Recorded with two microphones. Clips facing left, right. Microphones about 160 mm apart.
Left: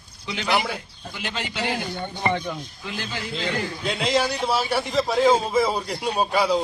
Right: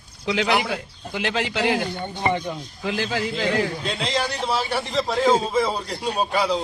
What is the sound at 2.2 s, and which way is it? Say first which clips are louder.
Speech: right 1 dB; 15° right (ahead or behind).